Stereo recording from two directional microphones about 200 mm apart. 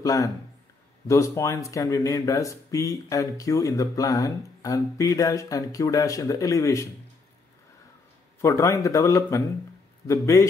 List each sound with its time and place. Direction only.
0.0 s speech: 15° left (ahead or behind)
8.4 s speech: 15° left (ahead or behind)